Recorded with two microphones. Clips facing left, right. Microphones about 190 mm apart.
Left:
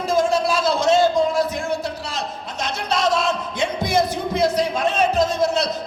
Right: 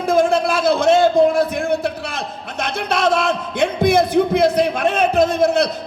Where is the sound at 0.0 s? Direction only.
55° right (ahead or behind).